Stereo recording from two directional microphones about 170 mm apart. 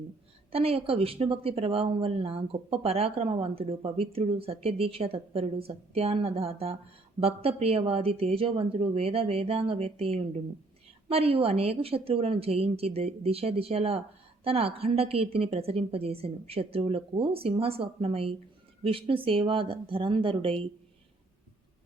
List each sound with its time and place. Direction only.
0.5 s speech: 35° right (ahead or behind)